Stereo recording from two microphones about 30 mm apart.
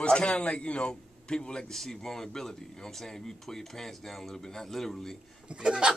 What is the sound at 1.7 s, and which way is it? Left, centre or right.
Speech, centre.